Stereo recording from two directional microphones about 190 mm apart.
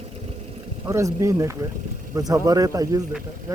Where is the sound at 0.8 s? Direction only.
15° right (ahead or behind).